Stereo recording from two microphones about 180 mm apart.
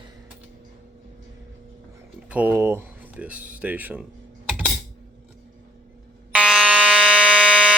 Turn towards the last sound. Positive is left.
turn(degrees=-5)  # may be behind; listen again after turning